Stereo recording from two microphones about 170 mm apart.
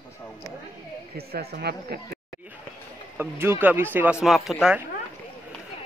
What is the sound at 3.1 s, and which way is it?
Speech, 15° right (ahead or behind).